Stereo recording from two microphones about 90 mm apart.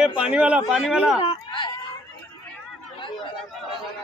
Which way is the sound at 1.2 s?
80° left.